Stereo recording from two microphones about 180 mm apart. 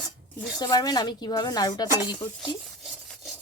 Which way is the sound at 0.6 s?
20° left (ahead or behind).